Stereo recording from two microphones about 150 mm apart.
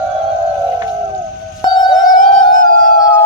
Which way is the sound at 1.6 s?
25° left (ahead or behind).